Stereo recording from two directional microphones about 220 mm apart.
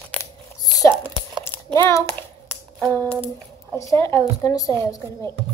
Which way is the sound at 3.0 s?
10° left (ahead or behind).